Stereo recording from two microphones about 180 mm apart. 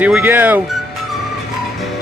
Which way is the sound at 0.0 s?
10° right (ahead or behind).